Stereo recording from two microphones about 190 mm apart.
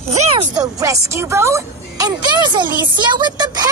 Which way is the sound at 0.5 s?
20° right (ahead or behind).